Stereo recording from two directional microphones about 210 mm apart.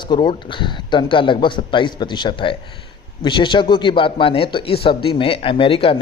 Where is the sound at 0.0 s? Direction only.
20° left (ahead or behind).